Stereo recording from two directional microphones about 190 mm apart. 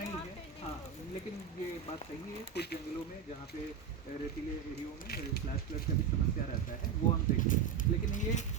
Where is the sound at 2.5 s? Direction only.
60° left (ahead or behind).